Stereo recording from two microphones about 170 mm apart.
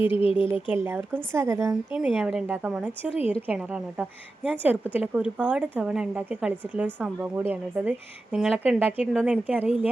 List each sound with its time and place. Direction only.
0.1 s speech: 30° left (ahead or behind)
0.4 s a woman's voice: 10° right (ahead or behind)